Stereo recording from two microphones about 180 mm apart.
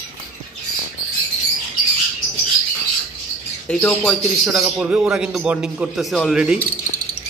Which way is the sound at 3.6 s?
5° left (ahead or behind).